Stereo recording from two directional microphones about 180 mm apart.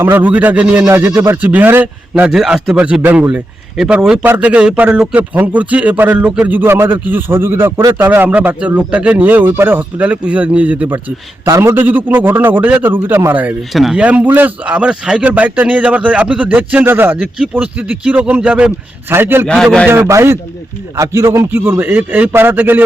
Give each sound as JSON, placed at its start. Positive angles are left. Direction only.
{"t": 0.0, "sound": "a man's voice", "side_deg": -10}
{"t": 19.5, "sound": "a man's voice", "side_deg": 5}
{"t": 19.9, "sound": "a man's voice", "side_deg": -15}